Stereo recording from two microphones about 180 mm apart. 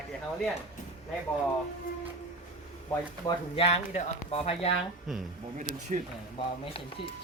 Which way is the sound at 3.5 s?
35° left (ahead or behind).